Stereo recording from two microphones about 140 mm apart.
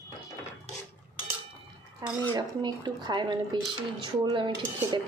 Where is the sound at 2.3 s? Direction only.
30° right (ahead or behind).